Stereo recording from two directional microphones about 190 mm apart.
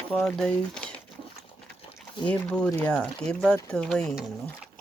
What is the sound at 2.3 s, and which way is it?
Speech, 5° left (ahead or behind).